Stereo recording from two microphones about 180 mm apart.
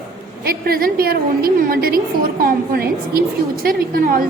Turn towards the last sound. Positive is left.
turn(degrees=-50)  # may be behind; listen again after turning